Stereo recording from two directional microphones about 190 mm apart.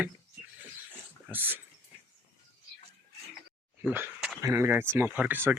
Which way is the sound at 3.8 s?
5° right (ahead or behind).